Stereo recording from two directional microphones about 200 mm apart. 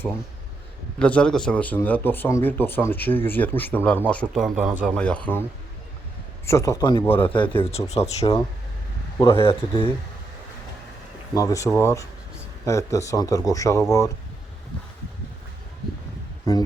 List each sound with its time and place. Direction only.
0.9 s speech: 5° left (ahead or behind)
4.9 s speech: 5° left (ahead or behind); by 9.8 s 25° left (ahead or behind)
11.3 s speech: 15° left (ahead or behind)
16.5 s speech: 15° left (ahead or behind)